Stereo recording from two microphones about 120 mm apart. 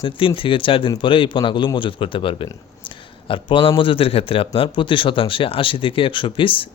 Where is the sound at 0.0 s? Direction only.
45° left (ahead or behind).